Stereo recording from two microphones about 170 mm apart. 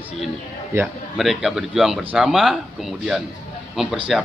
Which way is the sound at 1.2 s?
Centre (ahead or behind).